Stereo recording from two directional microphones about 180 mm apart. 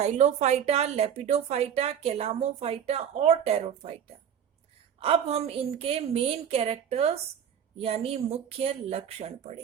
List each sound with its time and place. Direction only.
0.0 s speech: 40° right (ahead or behind)
4.9 s speech: 35° right (ahead or behind)